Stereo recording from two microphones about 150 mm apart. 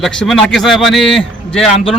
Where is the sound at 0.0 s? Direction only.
Centre (ahead or behind).